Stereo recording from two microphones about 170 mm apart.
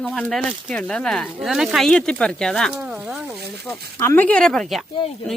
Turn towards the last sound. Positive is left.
turn(degrees=30)  # may be behind; listen again after turning